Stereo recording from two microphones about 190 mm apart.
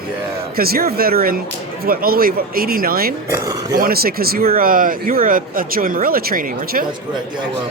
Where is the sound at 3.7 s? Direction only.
50° right (ahead or behind).